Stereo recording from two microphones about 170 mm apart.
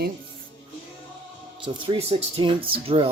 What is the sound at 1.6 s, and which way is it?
Speech, 35° right (ahead or behind).